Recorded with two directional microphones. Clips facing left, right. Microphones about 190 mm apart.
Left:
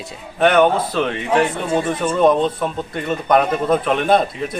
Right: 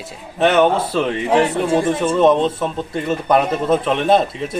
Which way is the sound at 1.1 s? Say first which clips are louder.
Right 3 dB; 35° right (ahead or behind).